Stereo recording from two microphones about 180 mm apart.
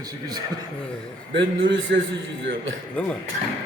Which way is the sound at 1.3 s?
90° right.